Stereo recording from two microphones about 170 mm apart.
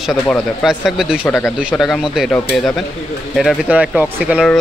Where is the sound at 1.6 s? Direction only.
5° right (ahead or behind).